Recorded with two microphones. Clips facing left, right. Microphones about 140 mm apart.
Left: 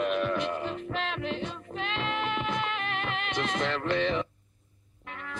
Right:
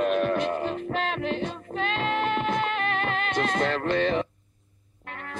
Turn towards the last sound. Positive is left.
turn(degrees=-45)  # may be behind; listen again after turning